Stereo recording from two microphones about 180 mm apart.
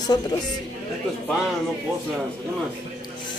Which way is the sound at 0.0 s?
20° left (ahead or behind).